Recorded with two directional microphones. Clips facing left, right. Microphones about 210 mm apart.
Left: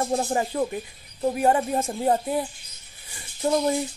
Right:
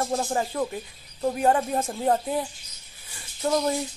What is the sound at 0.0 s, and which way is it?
Speech, 15° left (ahead or behind).